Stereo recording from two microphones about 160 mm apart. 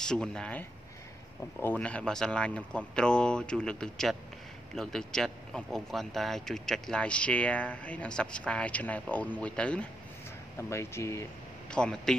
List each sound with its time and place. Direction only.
0.0 s speech: 5° left (ahead or behind)
11.7 s speech: 5° left (ahead or behind)